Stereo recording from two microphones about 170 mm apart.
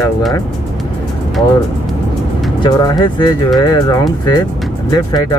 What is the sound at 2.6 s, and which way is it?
Speech, 25° left (ahead or behind).